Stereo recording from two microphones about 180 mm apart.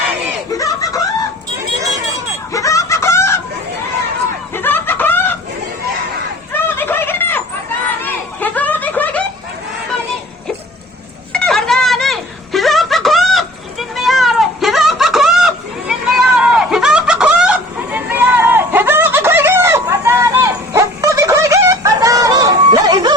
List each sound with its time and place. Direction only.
0.5 s snicker: 20° left (ahead or behind)
2.5 s chicken: 20° left (ahead or behind)
4.5 s chicken: 10° left (ahead or behind)
6.5 s fowl: 10° left (ahead or behind)
8.4 s snicker: 10° left (ahead or behind)
11.3 s a sound: 5° left (ahead or behind); by 23.1 s 20° right (ahead or behind)